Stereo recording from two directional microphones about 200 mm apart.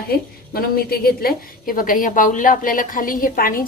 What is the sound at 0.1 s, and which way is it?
A woman's voice, 50° left (ahead or behind).